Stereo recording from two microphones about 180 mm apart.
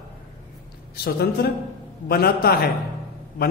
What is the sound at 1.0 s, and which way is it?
A man's voice, 60° left (ahead or behind).